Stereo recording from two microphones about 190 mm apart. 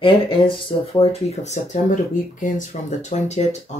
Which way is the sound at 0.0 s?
30° left (ahead or behind).